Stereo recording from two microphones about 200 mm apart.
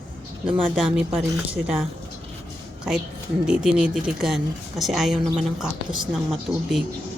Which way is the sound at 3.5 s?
5° right (ahead or behind).